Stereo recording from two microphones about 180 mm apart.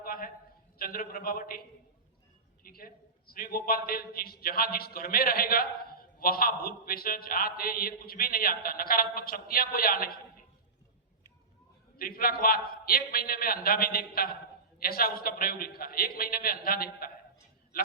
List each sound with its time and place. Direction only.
0.0 s a sound: 50° left (ahead or behind)
0.8 s a man's voice: 55° left (ahead or behind)
2.6 s a man's voice: 55° left (ahead or behind)
11.9 s a man's voice: 55° left (ahead or behind)